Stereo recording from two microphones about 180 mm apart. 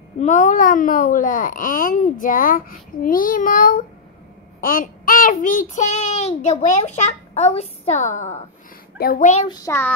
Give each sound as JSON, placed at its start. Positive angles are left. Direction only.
{"t": 0.2, "sound": "a child's voice", "side_deg": 40}
{"t": 4.6, "sound": "child singing", "side_deg": 50}
{"t": 8.9, "sound": "a child's voice", "side_deg": 55}
{"t": 9.5, "sound": "child singing", "side_deg": 15}